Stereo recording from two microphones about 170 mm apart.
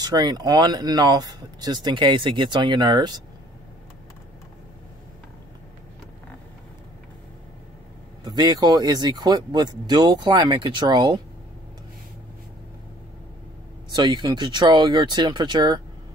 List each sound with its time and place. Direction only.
0.0 s speech: 25° right (ahead or behind)
8.2 s speech: 25° right (ahead or behind)
13.9 s speech: 25° right (ahead or behind)